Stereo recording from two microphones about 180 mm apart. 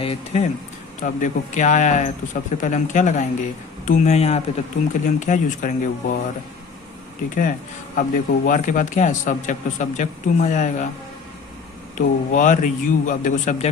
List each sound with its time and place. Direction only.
0.0 s speech: 30° left (ahead or behind)
1.0 s speech: 45° left (ahead or behind)
7.9 s speech: 45° left (ahead or behind)
11.9 s speech: 45° left (ahead or behind)